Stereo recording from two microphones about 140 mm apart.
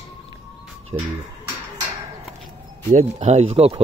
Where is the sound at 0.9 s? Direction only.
35° right (ahead or behind).